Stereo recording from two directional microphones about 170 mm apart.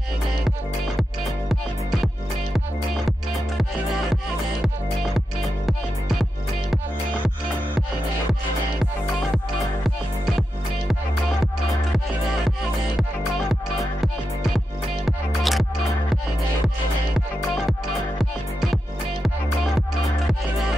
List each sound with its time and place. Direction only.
3.1 s music: centre (ahead or behind)
9.8 s music: centre (ahead or behind)
13.5 s music: centre (ahead or behind)